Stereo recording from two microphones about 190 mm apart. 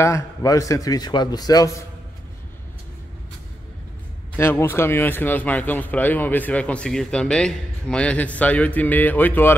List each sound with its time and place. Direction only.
0.0 s a man's voice: 15° left (ahead or behind)
4.4 s speech: 10° left (ahead or behind)